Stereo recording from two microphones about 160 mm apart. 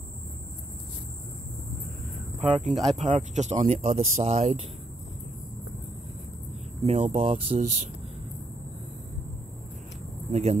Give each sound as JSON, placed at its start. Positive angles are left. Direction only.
{"t": 2.6, "sound": "speech", "side_deg": 0}
{"t": 3.0, "sound": "speech", "side_deg": -50}
{"t": 6.8, "sound": "speech", "side_deg": -40}
{"t": 10.3, "sound": "speech", "side_deg": -45}